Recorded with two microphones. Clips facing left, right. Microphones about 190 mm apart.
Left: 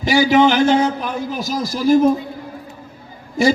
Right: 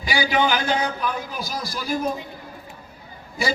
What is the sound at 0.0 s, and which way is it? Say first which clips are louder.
A man's voice: left 9 dB; 45° left (ahead or behind).